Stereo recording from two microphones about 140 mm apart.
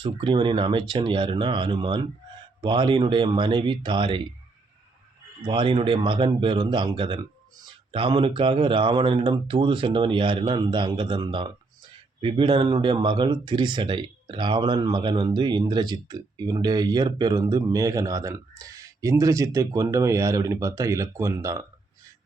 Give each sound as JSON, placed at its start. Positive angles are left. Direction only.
{"t": 0.0, "sound": "a man's voice", "side_deg": -35}
{"t": 5.4, "sound": "a man's voice", "side_deg": -35}